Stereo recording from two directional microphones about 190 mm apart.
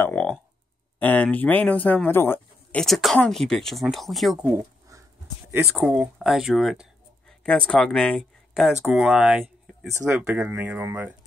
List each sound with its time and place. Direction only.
0.0 s clicking: 5° left (ahead or behind)
0.9 s speech: 10° left (ahead or behind)
4.5 s a sound: 15° right (ahead or behind)
5.5 s speech: 5° right (ahead or behind)